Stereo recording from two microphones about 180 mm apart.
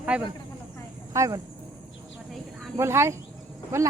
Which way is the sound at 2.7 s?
15° right (ahead or behind).